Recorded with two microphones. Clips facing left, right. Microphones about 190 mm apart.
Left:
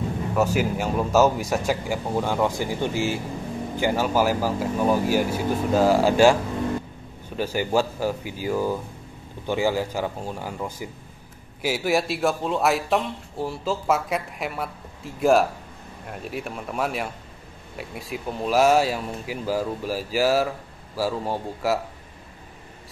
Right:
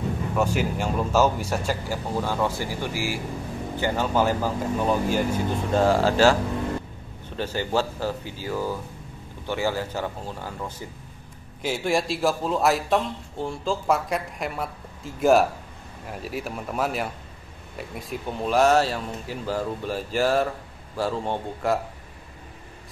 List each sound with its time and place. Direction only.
0.4 s speech: 5° left (ahead or behind); by 3.2 s 20° left (ahead or behind)
3.7 s speech: 10° left (ahead or behind)
7.3 s a man's voice: 10° left (ahead or behind)